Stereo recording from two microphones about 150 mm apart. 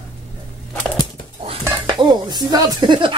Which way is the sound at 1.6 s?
25° right (ahead or behind).